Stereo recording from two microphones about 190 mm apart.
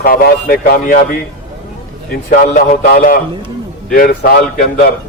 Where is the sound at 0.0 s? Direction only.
50° left (ahead or behind).